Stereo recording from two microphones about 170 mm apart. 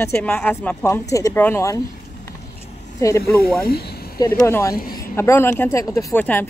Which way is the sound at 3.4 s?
60° left (ahead or behind).